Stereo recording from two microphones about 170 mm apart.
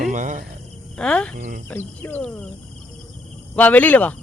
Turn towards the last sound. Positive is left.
turn(degrees=10)  # may be behind; listen again after turning